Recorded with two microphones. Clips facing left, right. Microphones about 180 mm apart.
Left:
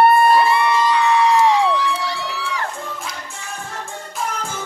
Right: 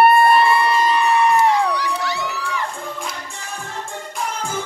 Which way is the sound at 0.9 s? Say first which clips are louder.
Left 1 dB; 90° left.